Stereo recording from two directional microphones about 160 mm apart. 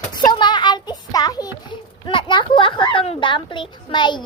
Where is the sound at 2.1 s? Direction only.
30° left (ahead or behind).